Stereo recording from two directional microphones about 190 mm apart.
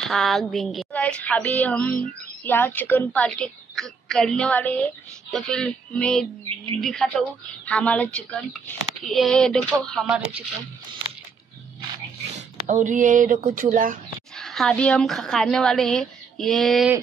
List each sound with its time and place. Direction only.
0.1 s a woman's voice: centre (ahead or behind)
12.6 s a sound: 40° right (ahead or behind)
14.3 s a woman's voice: centre (ahead or behind)